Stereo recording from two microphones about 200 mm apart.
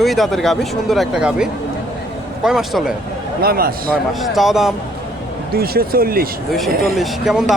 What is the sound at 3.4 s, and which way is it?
Speech, 50° right (ahead or behind).